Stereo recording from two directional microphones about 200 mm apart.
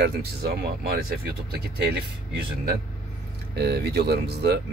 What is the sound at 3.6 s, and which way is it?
Speech, 55° right (ahead or behind).